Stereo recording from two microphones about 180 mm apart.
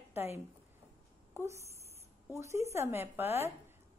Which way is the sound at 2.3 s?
15° right (ahead or behind).